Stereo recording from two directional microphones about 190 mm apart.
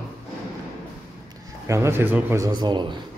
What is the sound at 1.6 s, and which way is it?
Speech, 15° right (ahead or behind).